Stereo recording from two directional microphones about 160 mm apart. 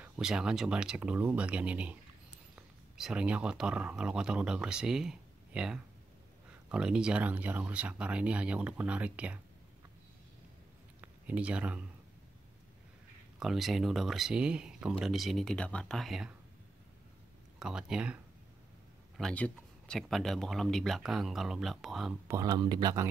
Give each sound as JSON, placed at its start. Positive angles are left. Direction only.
{"t": 0.0, "sound": "speech", "side_deg": -5}
{"t": 11.0, "sound": "a sound", "side_deg": -10}
{"t": 13.4, "sound": "speech", "side_deg": 0}
{"t": 17.6, "sound": "speech", "side_deg": -5}
{"t": 19.1, "sound": "speech", "side_deg": 5}
{"t": 22.3, "sound": "speech", "side_deg": -20}